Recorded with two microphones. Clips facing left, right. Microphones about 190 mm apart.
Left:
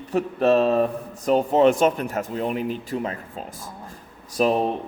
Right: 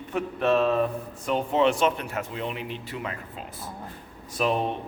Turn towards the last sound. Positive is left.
turn(degrees=40)  # may be behind; listen again after turning